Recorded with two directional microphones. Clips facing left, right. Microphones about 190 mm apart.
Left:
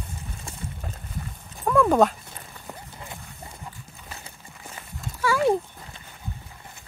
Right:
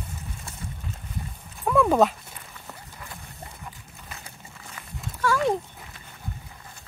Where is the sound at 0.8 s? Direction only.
45° left (ahead or behind).